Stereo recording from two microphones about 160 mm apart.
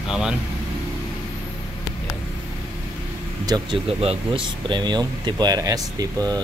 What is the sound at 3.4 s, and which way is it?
Speech, 25° right (ahead or behind).